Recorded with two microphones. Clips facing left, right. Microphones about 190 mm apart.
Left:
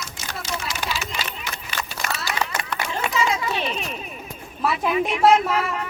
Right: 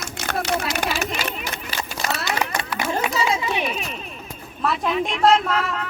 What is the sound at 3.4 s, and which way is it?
Speech, 15° right (ahead or behind).